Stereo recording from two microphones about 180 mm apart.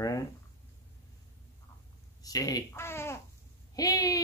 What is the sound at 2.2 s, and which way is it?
Speech, 20° left (ahead or behind).